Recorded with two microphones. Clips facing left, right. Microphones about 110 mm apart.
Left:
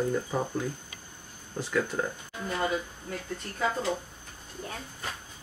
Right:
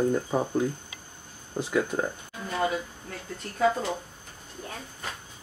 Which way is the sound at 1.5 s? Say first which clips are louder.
Right 2 dB; 10° right (ahead or behind).